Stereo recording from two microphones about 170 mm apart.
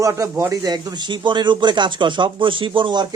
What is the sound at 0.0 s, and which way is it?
Speech, 20° right (ahead or behind).